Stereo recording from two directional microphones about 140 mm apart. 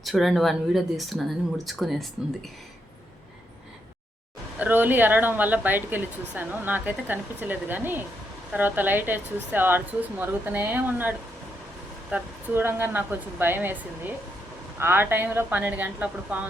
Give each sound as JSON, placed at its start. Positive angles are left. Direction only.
{"t": 0.0, "sound": "speech", "side_deg": 0}
{"t": 4.5, "sound": "speech", "side_deg": -10}
{"t": 12.1, "sound": "speech", "side_deg": -15}
{"t": 14.8, "sound": "speech", "side_deg": -15}